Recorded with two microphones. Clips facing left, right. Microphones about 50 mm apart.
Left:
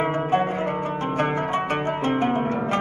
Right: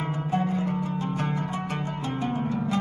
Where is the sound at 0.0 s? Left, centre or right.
Left.